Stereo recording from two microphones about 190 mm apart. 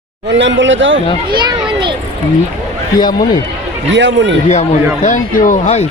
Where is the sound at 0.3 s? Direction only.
70° right (ahead or behind).